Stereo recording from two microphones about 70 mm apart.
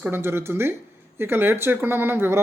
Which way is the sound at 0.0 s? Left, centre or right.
Right.